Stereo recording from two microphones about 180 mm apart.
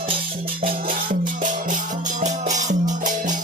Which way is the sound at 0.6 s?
50° right (ahead or behind).